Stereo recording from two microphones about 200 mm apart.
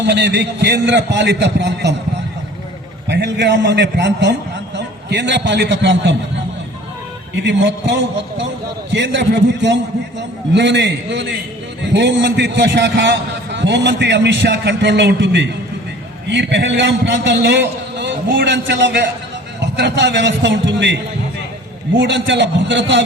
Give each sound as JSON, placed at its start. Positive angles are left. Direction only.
{"t": 0.0, "sound": "a man's voice", "side_deg": -60}
{"t": 3.1, "sound": "a man's voice", "side_deg": -60}
{"t": 7.3, "sound": "a man's voice", "side_deg": -60}